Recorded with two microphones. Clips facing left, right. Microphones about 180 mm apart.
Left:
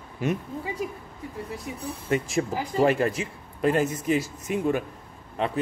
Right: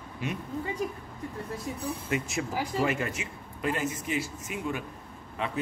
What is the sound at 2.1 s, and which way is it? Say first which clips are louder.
A man's voice: left 8 dB; 35° left (ahead or behind).